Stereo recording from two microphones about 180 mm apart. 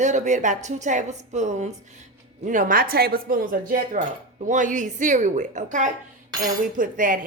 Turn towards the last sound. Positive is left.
turn(degrees=-50)  # may be behind; listen again after turning